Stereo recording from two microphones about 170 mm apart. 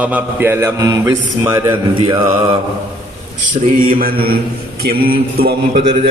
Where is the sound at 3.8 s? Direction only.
60° right (ahead or behind).